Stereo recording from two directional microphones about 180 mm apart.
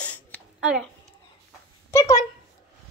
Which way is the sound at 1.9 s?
15° left (ahead or behind).